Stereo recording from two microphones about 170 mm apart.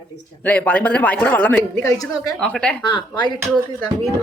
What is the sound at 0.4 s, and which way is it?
Speech, 10° left (ahead or behind).